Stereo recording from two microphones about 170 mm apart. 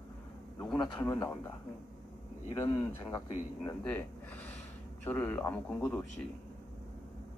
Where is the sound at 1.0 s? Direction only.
15° left (ahead or behind).